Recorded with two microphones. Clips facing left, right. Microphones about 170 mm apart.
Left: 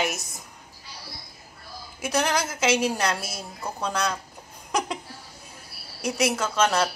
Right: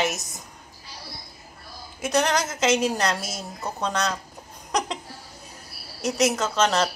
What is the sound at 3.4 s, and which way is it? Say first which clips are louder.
Speech: right 2 dB; 20° right (ahead or behind).